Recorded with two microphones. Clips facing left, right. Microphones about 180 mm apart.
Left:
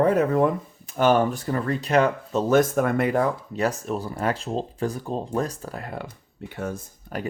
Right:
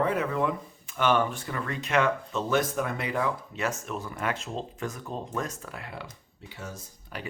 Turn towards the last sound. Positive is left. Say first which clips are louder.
# left 8 dB
turn(degrees=50)  # may be behind; listen again after turning